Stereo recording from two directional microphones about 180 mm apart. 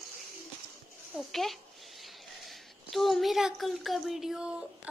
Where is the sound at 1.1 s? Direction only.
Centre (ahead or behind).